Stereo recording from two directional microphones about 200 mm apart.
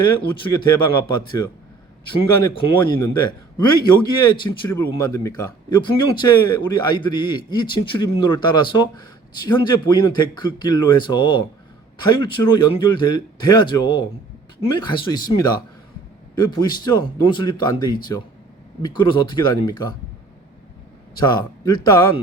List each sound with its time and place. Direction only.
0.2 s speech: 20° left (ahead or behind)
21.2 s speech: 20° left (ahead or behind)